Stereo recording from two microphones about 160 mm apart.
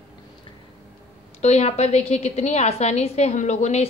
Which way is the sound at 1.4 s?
40° left (ahead or behind).